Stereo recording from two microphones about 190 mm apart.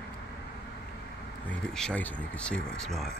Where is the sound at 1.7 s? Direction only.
5° left (ahead or behind).